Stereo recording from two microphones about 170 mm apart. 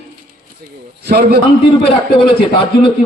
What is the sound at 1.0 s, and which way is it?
Speech, 70° right (ahead or behind).